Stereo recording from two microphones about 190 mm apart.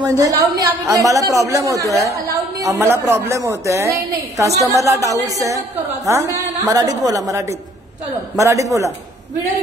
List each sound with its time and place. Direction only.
0.0 s a woman's voice: 15° right (ahead or behind)